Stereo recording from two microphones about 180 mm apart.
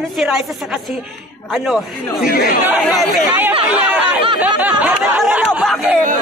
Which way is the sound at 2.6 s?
5° right (ahead or behind).